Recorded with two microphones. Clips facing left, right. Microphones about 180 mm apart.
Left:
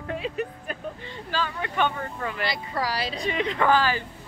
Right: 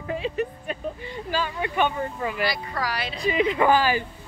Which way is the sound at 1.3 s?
15° right (ahead or behind).